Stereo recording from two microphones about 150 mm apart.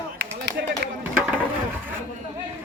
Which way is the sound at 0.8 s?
90° right.